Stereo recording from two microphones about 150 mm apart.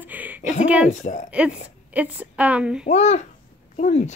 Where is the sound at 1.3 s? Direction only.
10° right (ahead or behind).